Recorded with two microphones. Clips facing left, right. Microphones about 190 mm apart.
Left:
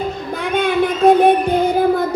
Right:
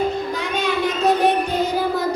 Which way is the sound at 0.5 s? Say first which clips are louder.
Left 6 dB; 55° left (ahead or behind).